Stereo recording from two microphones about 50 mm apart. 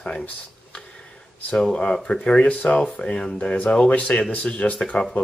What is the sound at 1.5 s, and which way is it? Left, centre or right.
Speech, centre.